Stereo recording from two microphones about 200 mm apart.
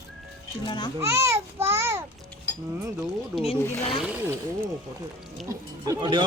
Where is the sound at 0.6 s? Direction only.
20° left (ahead or behind).